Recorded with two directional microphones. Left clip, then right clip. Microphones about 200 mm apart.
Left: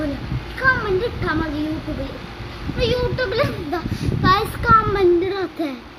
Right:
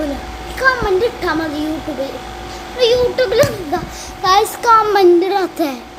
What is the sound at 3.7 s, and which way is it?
Speech, 35° left (ahead or behind).